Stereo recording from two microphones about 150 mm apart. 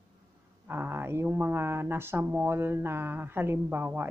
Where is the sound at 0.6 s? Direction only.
15° right (ahead or behind).